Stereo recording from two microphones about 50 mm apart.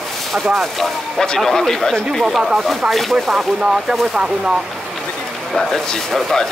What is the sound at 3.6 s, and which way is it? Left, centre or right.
Speech, centre.